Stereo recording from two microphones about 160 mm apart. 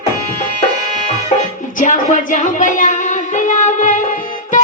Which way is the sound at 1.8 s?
50° left (ahead or behind).